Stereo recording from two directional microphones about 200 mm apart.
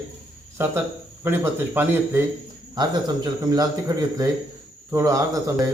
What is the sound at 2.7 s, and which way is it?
A man's voice, 20° right (ahead or behind).